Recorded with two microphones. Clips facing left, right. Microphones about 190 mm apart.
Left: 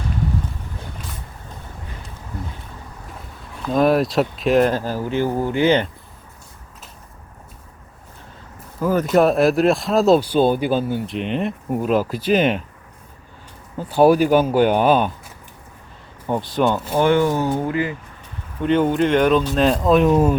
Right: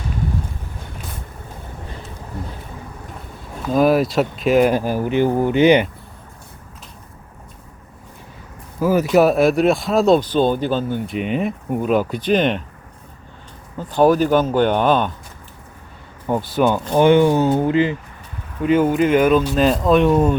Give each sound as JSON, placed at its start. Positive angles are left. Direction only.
{"t": 3.6, "sound": "speech", "side_deg": -5}
{"t": 4.7, "sound": "speech", "side_deg": -15}
{"t": 8.8, "sound": "speech", "side_deg": -5}
{"t": 11.0, "sound": "speech", "side_deg": -5}
{"t": 13.7, "sound": "speech", "side_deg": 10}
{"t": 16.2, "sound": "speech", "side_deg": -5}
{"t": 17.0, "sound": "speech", "side_deg": -20}
{"t": 18.6, "sound": "speech", "side_deg": -5}